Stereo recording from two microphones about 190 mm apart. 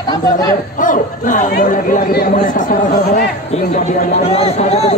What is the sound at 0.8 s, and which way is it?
Speech, 45° left (ahead or behind).